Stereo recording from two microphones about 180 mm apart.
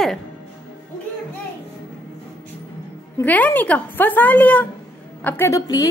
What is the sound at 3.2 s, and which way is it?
A woman's voice, 10° left (ahead or behind).